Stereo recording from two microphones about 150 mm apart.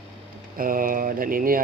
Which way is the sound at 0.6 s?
65° right (ahead or behind).